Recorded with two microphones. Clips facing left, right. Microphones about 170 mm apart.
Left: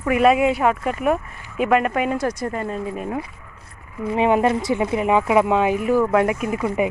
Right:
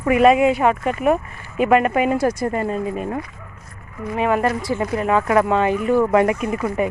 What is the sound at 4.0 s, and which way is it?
A woman's voice, 25° left (ahead or behind).